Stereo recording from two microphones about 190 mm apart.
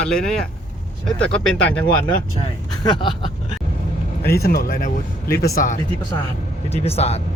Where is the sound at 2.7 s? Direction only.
25° left (ahead or behind).